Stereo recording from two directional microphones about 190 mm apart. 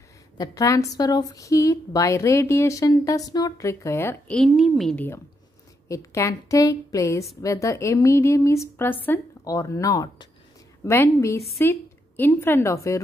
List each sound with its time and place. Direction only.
0.4 s a woman's voice: 15° left (ahead or behind)